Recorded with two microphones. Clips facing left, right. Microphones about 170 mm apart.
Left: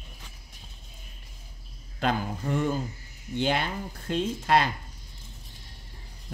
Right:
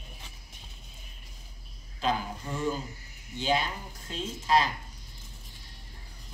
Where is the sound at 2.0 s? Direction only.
60° left (ahead or behind).